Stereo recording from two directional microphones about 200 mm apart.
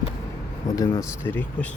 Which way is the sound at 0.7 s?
15° left (ahead or behind).